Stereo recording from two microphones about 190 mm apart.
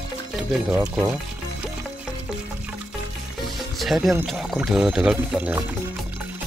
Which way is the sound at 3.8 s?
Centre (ahead or behind).